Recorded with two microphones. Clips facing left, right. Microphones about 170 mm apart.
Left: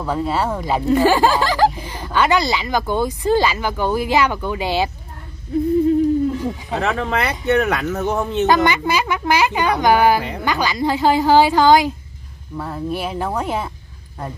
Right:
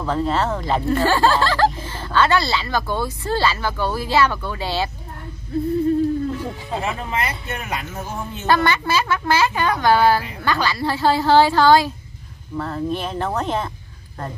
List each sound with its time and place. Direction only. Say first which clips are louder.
0.0 s speech: even; 10° left (ahead or behind)
6.7 s speech: left 4 dB; 70° left (ahead or behind)
8.5 s speech: even; 15° left (ahead or behind)